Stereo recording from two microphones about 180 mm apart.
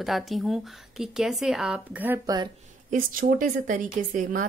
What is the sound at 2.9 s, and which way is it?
A woman's voice, 45° right (ahead or behind).